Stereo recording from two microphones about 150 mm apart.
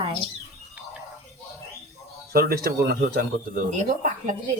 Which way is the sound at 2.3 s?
90° right.